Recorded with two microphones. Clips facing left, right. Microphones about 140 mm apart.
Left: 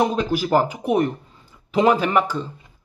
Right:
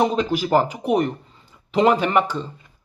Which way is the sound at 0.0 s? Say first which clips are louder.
Even; 5° left (ahead or behind).